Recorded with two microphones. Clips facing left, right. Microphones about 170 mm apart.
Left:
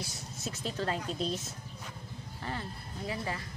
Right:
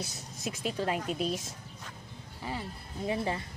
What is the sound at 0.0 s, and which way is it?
Speech, 15° right (ahead or behind).